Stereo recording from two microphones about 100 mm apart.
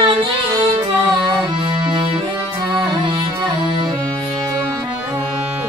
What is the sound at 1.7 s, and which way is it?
Music, 55° right (ahead or behind).